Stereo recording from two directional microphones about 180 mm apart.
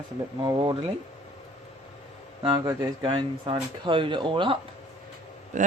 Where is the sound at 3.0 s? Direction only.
30° right (ahead or behind).